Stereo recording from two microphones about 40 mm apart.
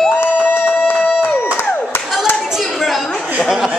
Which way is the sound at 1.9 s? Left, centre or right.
Left.